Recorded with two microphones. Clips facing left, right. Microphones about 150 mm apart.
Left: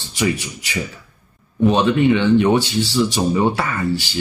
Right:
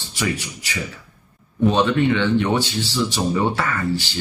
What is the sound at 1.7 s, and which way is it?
Speech, 15° left (ahead or behind).